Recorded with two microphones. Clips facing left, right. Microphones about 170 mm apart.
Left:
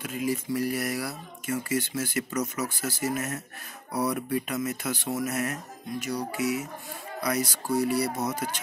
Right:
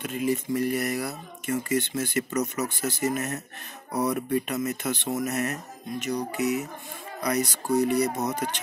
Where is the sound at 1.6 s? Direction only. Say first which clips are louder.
Right 2 dB; 5° left (ahead or behind).